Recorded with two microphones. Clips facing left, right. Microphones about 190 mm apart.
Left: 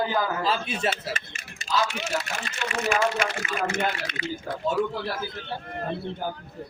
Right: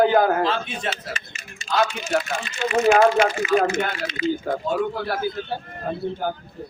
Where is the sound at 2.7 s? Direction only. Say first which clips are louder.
Right 9 dB; 55° right (ahead or behind).